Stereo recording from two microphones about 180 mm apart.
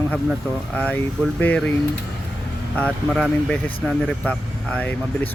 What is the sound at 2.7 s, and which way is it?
Speech, 5° left (ahead or behind).